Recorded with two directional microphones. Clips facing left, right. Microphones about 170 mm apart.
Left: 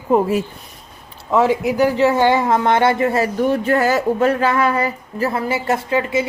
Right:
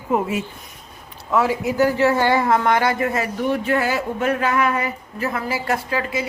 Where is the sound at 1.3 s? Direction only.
20° left (ahead or behind).